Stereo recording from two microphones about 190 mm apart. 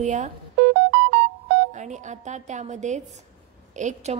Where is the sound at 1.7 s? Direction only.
40° right (ahead or behind).